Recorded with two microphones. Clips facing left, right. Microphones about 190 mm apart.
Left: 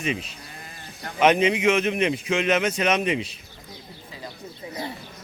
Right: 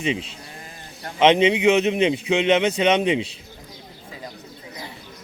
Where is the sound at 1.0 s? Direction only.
25° right (ahead or behind).